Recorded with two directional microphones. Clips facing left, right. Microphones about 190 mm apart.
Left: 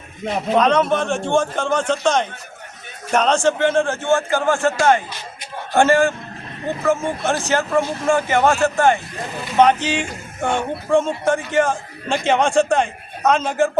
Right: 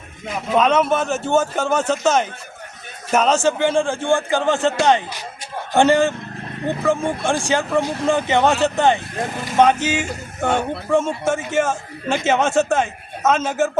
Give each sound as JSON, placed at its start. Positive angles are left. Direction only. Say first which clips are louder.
{"t": 0.5, "sound": "a man's voice", "louder": "even", "side_deg": -5}
{"t": 9.8, "sound": "a man's voice", "louder": "right 1 dB", "side_deg": -5}